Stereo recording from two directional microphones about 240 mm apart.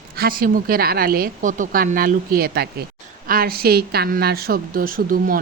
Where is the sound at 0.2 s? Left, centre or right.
Right.